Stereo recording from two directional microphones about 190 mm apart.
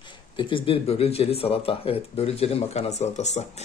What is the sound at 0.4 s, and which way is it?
Speech, 25° left (ahead or behind).